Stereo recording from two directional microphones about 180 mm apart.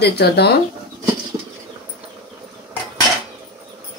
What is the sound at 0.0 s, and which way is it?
Speech, 65° left (ahead or behind).